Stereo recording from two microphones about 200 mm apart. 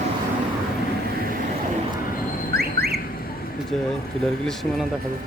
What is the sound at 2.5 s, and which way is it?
Car alarm, 50° right (ahead or behind).